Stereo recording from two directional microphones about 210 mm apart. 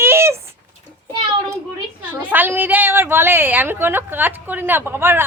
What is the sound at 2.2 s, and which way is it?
A woman's voice, 10° right (ahead or behind).